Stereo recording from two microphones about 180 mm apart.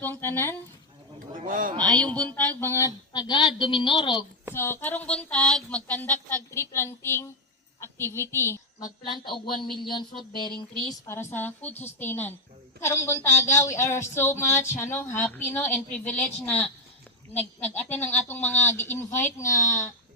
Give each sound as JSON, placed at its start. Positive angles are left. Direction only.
{"t": 0.0, "sound": "speech", "side_deg": 10}
{"t": 1.4, "sound": "speech", "side_deg": -50}
{"t": 1.8, "sound": "speech", "side_deg": 5}
{"t": 4.5, "sound": "a woman's voice", "side_deg": 10}
{"t": 8.8, "sound": "speech", "side_deg": 55}
{"t": 11.1, "sound": "speech", "side_deg": 10}
{"t": 17.6, "sound": "speech", "side_deg": 10}